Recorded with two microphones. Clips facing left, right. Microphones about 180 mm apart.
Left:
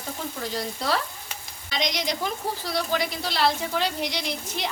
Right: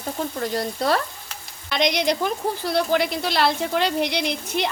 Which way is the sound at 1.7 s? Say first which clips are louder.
Right 7 dB; 60° right (ahead or behind).